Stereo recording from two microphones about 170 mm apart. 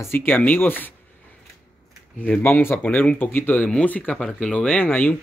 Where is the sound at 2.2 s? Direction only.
10° left (ahead or behind).